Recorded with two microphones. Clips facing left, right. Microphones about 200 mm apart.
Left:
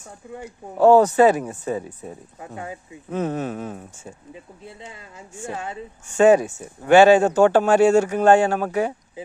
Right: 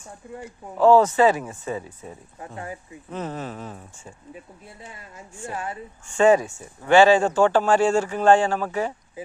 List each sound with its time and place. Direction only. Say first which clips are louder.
0.8 s speech: left 2 dB; 55° left (ahead or behind)
1.0 s speech: left 3 dB; 40° left (ahead or behind)
3.1 s speech: left 6 dB; 55° left (ahead or behind)
6.1 s speech: left 3 dB; 40° left (ahead or behind)
7.4 s speech: left 4 dB; 60° left (ahead or behind)